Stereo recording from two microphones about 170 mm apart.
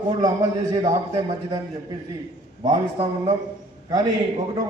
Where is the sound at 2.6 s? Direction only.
25° right (ahead or behind).